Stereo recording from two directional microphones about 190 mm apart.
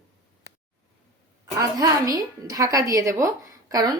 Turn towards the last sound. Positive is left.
turn(degrees=-20)  # may be behind; listen again after turning